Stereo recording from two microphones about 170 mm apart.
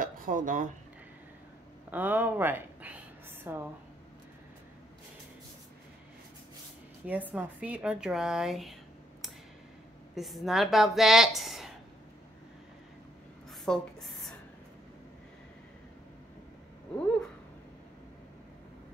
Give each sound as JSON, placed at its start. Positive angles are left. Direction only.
{"t": 0.0, "sound": "speech", "side_deg": -55}
{"t": 1.9, "sound": "speech", "side_deg": -10}
{"t": 7.1, "sound": "speech", "side_deg": -10}
{"t": 10.1, "sound": "speech", "side_deg": 0}
{"t": 13.7, "sound": "speech", "side_deg": 5}